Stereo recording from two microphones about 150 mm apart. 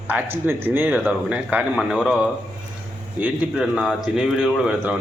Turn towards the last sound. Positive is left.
turn(degrees=-5)  # may be behind; listen again after turning